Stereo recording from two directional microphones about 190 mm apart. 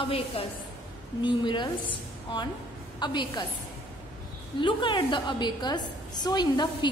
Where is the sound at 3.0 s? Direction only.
25° left (ahead or behind).